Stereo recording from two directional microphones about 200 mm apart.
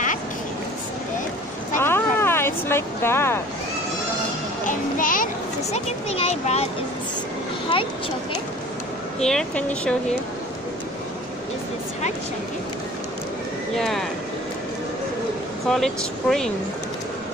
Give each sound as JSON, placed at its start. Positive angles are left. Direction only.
{"t": 1.8, "sound": "vehicle", "side_deg": 10}
{"t": 4.6, "sound": "a child's voice", "side_deg": 40}
{"t": 9.2, "sound": "speech", "side_deg": 5}
{"t": 13.7, "sound": "speech", "side_deg": 0}
{"t": 15.6, "sound": "speech", "side_deg": 0}